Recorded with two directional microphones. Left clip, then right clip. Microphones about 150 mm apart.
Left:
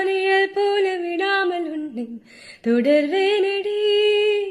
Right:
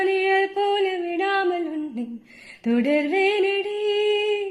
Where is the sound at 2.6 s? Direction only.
10° left (ahead or behind).